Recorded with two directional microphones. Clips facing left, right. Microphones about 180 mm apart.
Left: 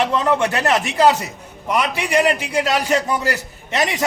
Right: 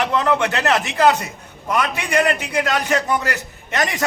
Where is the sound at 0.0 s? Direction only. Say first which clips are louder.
Left 1 dB; 25° left (ahead or behind).